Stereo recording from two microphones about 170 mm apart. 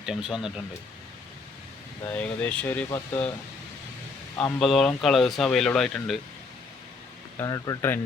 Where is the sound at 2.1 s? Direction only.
10° left (ahead or behind).